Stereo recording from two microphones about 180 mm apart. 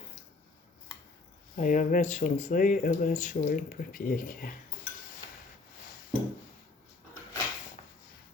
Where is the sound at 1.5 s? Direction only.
45° left (ahead or behind).